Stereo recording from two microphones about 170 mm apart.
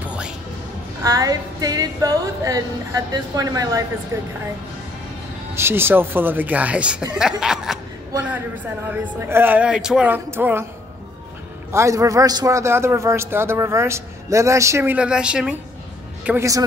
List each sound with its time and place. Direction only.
0.0 s music: 5° right (ahead or behind)
1.0 s a man's voice: 20° right (ahead or behind)
5.5 s a man's voice: 15° right (ahead or behind)
8.8 s a man's voice: 10° right (ahead or behind)
11.7 s a man's voice: 20° right (ahead or behind)
16.3 s a man's voice: 15° right (ahead or behind)